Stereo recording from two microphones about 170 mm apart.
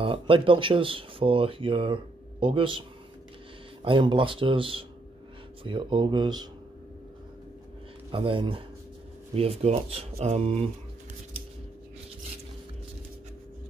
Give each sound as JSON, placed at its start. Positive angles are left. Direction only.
{"t": 0.0, "sound": "speech", "side_deg": -30}
{"t": 3.8, "sound": "speech", "side_deg": -30}
{"t": 8.1, "sound": "speech", "side_deg": -30}